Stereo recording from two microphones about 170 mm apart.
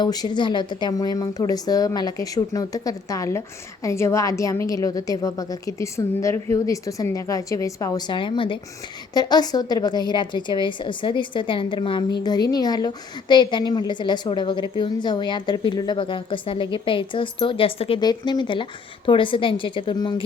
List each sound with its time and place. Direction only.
0.0 s a woman's voice: 25° left (ahead or behind)